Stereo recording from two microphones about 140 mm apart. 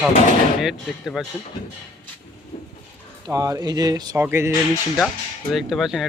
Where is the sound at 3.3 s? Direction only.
25° right (ahead or behind).